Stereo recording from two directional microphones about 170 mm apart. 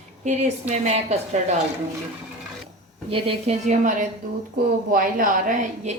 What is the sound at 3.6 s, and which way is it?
A woman's voice, 50° right (ahead or behind).